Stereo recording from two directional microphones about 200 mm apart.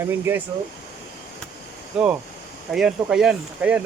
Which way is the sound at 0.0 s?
10° right (ahead or behind).